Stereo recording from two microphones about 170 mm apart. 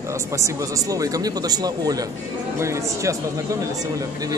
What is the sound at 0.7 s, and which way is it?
A man's voice, 20° right (ahead or behind).